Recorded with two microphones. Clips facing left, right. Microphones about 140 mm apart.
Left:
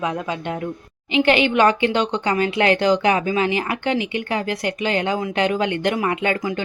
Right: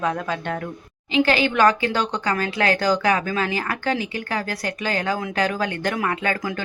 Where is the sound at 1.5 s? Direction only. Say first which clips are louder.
Left 2 dB; 20° left (ahead or behind).